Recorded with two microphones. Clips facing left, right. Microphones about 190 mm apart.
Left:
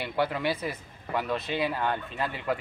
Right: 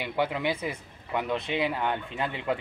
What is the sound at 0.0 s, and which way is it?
Speech, 15° right (ahead or behind).